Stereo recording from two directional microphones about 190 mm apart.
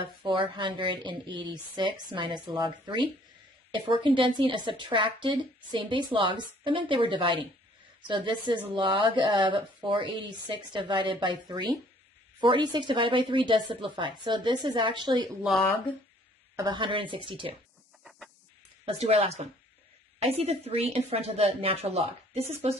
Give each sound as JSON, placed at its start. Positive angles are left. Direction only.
{"t": 0.0, "sound": "a woman's voice", "side_deg": -25}
{"t": 16.5, "sound": "a woman's voice", "side_deg": -25}
{"t": 18.9, "sound": "speech", "side_deg": -35}